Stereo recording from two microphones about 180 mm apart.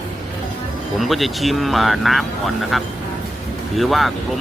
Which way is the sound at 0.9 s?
Centre (ahead or behind).